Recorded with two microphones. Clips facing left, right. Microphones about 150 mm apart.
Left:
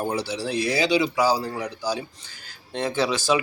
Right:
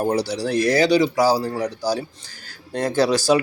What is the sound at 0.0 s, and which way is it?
Speech, 40° right (ahead or behind).